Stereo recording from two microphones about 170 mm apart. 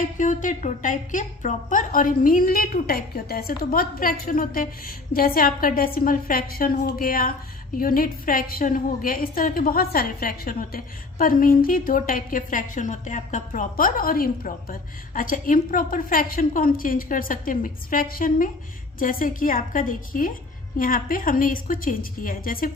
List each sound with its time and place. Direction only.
0.0 s a woman's voice: 50° left (ahead or behind)